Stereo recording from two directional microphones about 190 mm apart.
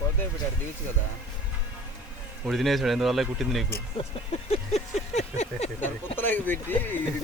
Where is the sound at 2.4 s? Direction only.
Centre (ahead or behind).